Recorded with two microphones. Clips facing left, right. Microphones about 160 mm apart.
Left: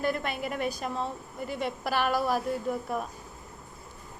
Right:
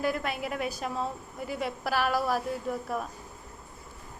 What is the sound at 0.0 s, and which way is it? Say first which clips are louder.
A woman's voice: even; 5° right (ahead or behind).